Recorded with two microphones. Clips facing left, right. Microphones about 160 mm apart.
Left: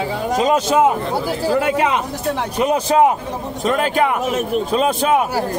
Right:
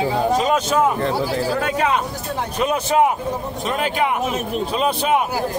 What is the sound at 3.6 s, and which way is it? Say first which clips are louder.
Speech: left 5 dB; 45° left (ahead or behind).